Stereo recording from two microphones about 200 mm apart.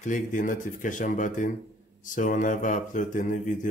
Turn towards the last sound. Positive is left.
turn(degrees=40)  # may be behind; listen again after turning